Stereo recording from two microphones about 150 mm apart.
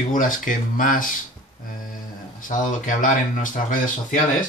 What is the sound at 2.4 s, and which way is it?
Speech, 60° left (ahead or behind).